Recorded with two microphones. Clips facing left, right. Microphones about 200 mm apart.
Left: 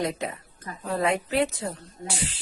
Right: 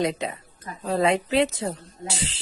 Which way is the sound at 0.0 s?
20° right (ahead or behind).